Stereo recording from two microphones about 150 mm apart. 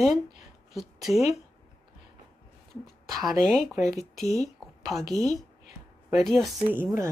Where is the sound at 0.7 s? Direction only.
Centre (ahead or behind).